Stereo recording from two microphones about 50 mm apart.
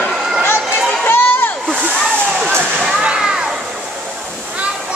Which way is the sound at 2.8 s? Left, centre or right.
Centre.